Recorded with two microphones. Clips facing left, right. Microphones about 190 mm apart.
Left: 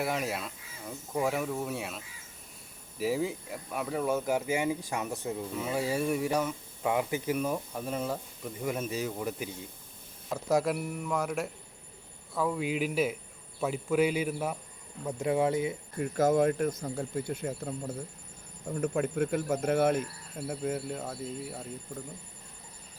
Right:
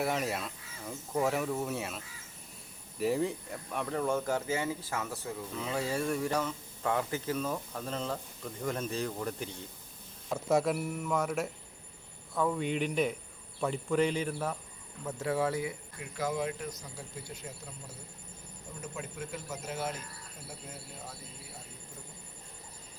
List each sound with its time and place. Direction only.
0.0 s speech: centre (ahead or behind)
3.0 s speech: centre (ahead or behind); by 15.7 s 20° left (ahead or behind)
16.0 s speech: 45° left (ahead or behind)